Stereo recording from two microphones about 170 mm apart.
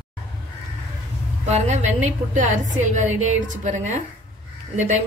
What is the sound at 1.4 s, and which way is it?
Speech, 40° right (ahead or behind).